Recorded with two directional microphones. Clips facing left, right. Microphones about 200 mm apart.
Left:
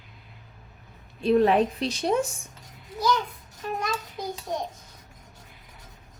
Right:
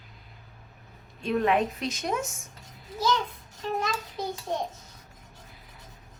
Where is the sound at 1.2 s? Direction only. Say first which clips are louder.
Left 5 dB; 35° left (ahead or behind).